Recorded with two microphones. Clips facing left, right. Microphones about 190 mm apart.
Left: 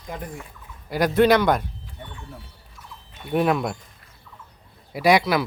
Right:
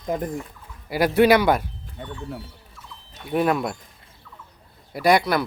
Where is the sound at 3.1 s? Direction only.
Centre (ahead or behind).